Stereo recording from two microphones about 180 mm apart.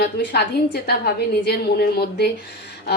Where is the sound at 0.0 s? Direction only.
70° left (ahead or behind).